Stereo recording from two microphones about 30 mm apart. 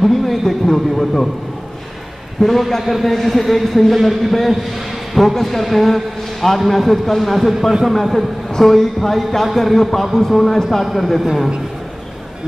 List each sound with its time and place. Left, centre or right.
0.0 s a man's voice: centre
0.7 s speech: centre
2.4 s a man's voice: left
2.8 s a man's voice: centre